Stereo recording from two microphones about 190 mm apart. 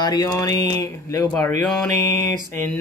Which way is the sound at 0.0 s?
20° left (ahead or behind).